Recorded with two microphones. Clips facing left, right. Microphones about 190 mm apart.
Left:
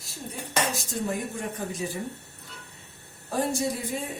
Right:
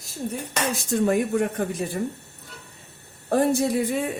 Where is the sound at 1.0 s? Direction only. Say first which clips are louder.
Right 10 dB; 65° right (ahead or behind).